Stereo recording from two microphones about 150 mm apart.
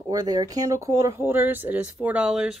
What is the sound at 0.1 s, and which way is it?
Speech, 25° right (ahead or behind).